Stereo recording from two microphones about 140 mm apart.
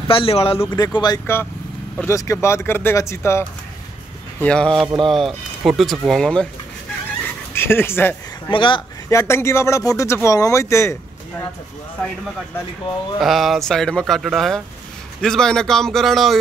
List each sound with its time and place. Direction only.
0.1 s speech: 40° left (ahead or behind)
0.7 s speech: 30° left (ahead or behind)
1.2 s speech: 15° left (ahead or behind)
4.4 s speech: 5° left (ahead or behind)
7.5 s speech: 15° left (ahead or behind)
8.5 s speech: 35° left (ahead or behind)
9.1 s speech: 20° left (ahead or behind)
13.2 s speech: centre (ahead or behind)